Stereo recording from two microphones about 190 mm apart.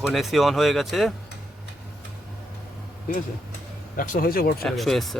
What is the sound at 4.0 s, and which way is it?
Speech, 45° left (ahead or behind).